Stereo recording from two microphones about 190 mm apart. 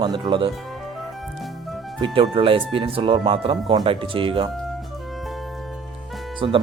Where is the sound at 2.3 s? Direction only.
30° right (ahead or behind).